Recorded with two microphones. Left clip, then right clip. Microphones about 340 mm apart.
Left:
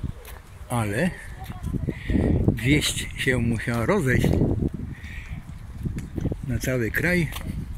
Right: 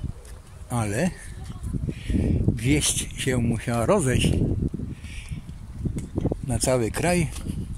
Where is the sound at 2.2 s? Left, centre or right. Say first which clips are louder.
Left 4 dB; left.